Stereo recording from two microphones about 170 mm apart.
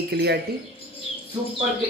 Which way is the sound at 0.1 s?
75° right (ahead or behind).